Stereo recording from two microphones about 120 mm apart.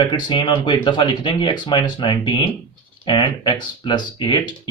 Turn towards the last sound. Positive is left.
turn(degrees=40)  # may be behind; listen again after turning